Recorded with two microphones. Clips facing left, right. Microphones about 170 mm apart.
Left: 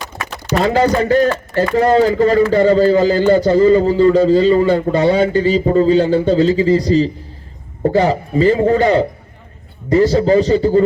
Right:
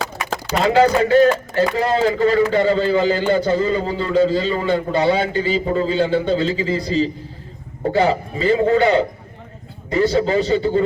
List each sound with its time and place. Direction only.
0.6 s a man's voice: 40° left (ahead or behind)